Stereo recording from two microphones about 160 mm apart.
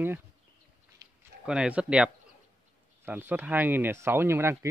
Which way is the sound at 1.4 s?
5° right (ahead or behind).